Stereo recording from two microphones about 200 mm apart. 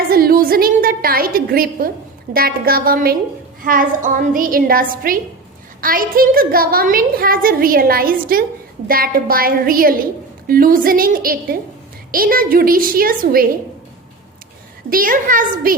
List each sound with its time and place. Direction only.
0.1 s a woman's voice: 50° right (ahead or behind)
14.8 s a woman's voice: 45° right (ahead or behind)